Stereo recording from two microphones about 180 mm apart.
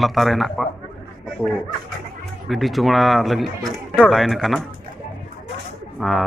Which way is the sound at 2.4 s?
Centre (ahead or behind).